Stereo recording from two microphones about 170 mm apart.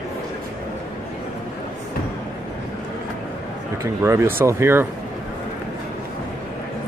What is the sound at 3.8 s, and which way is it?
Speech, 15° right (ahead or behind).